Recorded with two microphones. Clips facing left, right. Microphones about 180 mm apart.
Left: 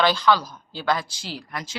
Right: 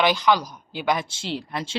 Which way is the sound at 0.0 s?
15° right (ahead or behind).